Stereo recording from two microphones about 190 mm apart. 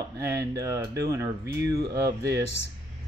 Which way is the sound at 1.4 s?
65° right (ahead or behind).